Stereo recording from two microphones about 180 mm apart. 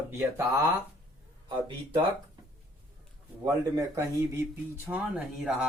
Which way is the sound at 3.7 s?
15° right (ahead or behind).